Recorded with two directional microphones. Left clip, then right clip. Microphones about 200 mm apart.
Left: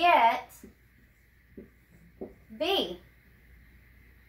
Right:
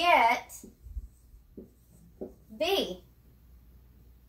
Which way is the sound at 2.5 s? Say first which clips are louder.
Even; 5° left (ahead or behind).